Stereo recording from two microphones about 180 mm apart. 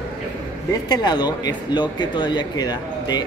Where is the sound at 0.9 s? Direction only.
25° left (ahead or behind).